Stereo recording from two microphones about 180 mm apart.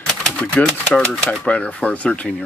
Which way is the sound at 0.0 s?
5° left (ahead or behind).